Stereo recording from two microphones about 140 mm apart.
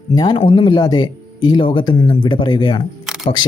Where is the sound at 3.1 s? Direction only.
5° right (ahead or behind).